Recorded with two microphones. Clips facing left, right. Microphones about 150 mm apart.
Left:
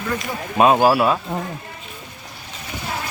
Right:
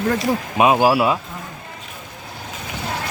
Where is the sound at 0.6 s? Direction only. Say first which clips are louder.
Left 1 dB; 10° right (ahead or behind).